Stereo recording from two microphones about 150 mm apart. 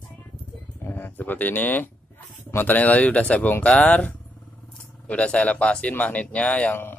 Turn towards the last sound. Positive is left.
turn(degrees=10)  # may be behind; listen again after turning